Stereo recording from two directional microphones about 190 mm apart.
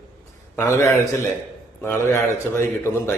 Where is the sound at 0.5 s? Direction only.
15° left (ahead or behind).